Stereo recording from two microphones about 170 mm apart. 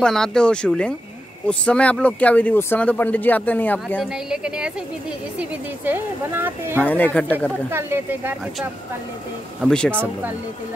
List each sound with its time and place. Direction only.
0.0 s speech: 5° left (ahead or behind)
4.0 s a woman's voice: 5° right (ahead or behind)
6.8 s speech: 10° left (ahead or behind)
7.7 s a woman's voice: 15° right (ahead or behind)
9.6 s speech: 5° left (ahead or behind)